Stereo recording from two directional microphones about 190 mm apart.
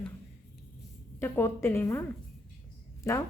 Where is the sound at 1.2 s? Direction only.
15° left (ahead or behind).